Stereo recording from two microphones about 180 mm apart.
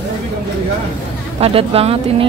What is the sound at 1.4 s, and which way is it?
Speech, 35° right (ahead or behind).